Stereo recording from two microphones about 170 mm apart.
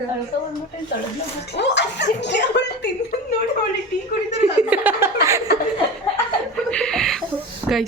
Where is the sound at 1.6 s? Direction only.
90° left.